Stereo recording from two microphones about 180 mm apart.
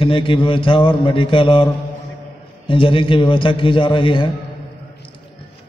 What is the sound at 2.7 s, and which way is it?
A man's voice, 30° left (ahead or behind).